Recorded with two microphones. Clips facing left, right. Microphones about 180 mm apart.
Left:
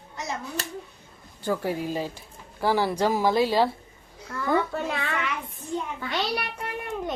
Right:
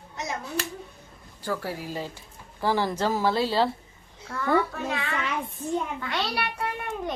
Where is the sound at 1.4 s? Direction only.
20° left (ahead or behind).